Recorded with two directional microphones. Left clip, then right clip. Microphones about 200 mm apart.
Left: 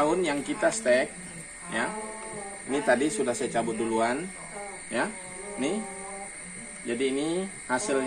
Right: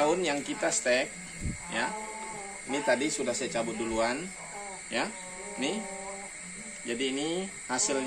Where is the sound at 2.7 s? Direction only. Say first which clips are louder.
Left 3 dB; 10° right (ahead or behind).